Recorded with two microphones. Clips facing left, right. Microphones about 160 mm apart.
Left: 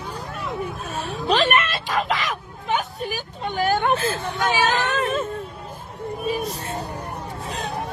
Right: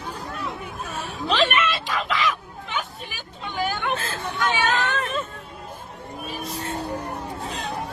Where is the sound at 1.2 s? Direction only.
40° left (ahead or behind).